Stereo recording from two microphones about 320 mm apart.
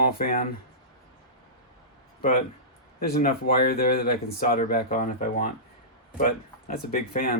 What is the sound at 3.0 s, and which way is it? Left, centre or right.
Speech, left.